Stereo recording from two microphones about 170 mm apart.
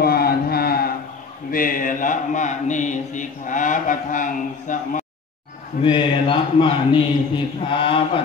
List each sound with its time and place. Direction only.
0.0 s mantra: 65° left (ahead or behind)
5.8 s a man's voice: 30° left (ahead or behind)